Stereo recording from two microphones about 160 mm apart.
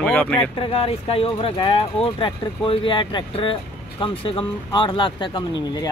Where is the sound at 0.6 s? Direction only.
35° left (ahead or behind).